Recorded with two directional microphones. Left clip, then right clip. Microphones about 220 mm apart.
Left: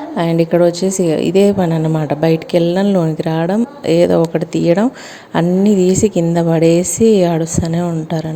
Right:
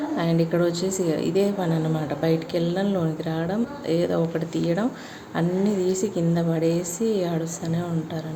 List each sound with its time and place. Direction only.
0.2 s a woman's voice: 35° left (ahead or behind)